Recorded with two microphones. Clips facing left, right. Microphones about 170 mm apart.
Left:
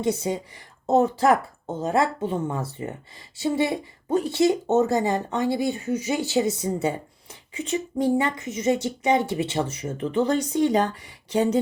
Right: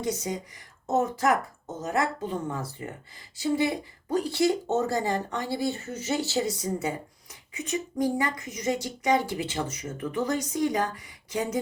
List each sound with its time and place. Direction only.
0.0 s speech: 25° left (ahead or behind)